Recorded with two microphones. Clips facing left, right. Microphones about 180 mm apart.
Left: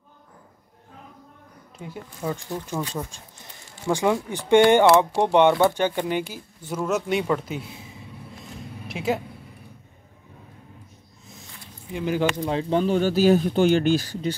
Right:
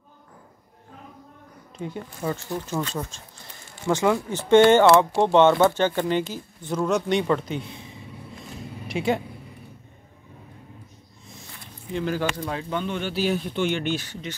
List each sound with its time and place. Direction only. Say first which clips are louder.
1.8 s speech: right 3 dB; 5° left (ahead or behind)
11.9 s speech: left 2 dB; 15° left (ahead or behind); by 14.3 s 35° left (ahead or behind)